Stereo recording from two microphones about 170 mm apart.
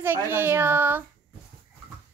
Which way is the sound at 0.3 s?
15° right (ahead or behind).